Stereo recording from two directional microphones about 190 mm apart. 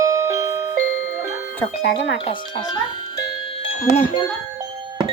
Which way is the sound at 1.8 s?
60° left (ahead or behind).